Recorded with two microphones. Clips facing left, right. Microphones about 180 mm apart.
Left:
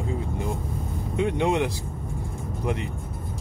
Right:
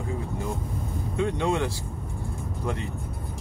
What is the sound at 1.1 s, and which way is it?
Speech, 20° left (ahead or behind).